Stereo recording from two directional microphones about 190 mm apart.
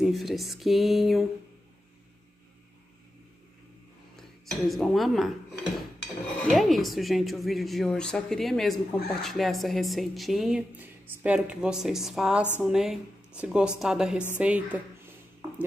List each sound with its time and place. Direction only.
0.0 s speech: centre (ahead or behind)
4.2 s speech: centre (ahead or behind)